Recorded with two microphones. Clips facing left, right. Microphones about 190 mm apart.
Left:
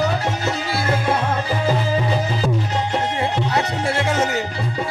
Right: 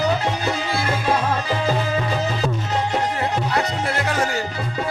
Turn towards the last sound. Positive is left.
turn(degrees=25)  # may be behind; listen again after turning